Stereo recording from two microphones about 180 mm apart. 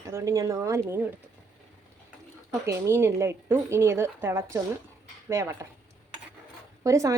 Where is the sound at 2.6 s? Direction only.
15° right (ahead or behind).